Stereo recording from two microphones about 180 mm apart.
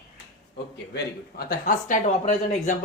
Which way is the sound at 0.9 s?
55° left (ahead or behind).